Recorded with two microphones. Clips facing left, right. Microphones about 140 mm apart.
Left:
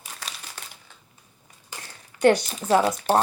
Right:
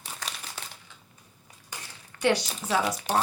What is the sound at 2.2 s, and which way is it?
Speech, 50° left (ahead or behind).